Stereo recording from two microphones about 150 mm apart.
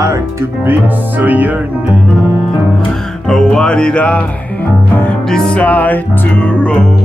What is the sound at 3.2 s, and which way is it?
Music, 5° left (ahead or behind).